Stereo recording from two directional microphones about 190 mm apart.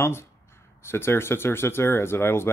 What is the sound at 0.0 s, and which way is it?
Speech, 15° left (ahead or behind).